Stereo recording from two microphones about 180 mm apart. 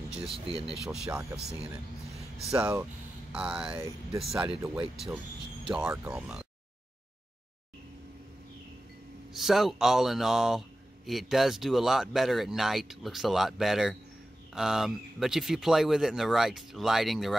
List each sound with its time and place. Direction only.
0.3 s speech: 30° right (ahead or behind)
0.7 s speech: 5° right (ahead or behind)
2.5 s speech: 15° right (ahead or behind)
9.3 s speech: centre (ahead or behind)